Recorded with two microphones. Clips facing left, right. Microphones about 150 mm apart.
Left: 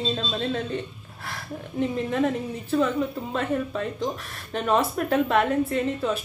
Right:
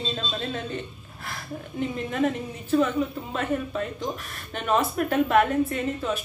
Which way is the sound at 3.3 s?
35° left (ahead or behind).